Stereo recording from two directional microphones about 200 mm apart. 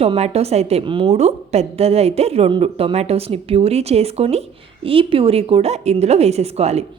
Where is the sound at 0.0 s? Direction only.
30° right (ahead or behind).